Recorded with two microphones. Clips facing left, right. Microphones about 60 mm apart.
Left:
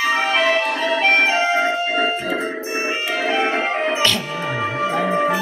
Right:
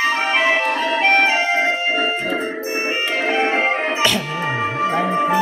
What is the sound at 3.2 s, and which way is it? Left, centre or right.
Music, centre.